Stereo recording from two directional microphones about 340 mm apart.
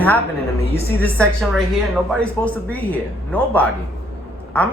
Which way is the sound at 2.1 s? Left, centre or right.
Centre.